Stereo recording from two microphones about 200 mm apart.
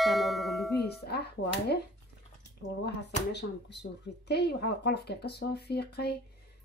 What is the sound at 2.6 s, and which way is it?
Speech, 65° left (ahead or behind).